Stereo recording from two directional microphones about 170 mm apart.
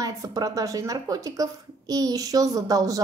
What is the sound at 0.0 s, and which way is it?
A woman's voice, 20° right (ahead or behind).